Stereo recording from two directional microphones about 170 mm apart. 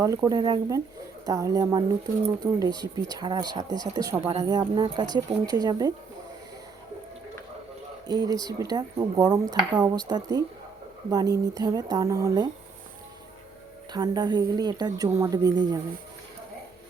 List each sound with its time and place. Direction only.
0.0 s speech: 20° right (ahead or behind)
8.0 s speech: 25° right (ahead or behind)
13.9 s speech: 25° right (ahead or behind)